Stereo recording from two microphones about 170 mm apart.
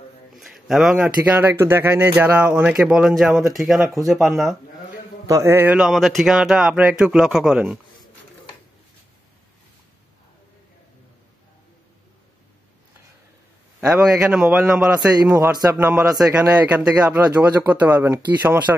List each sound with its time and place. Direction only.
0.4 s speech: centre (ahead or behind)
5.2 s speech: 15° right (ahead or behind)
13.7 s speech: 5° right (ahead or behind)
15.3 s speech: 20° right (ahead or behind)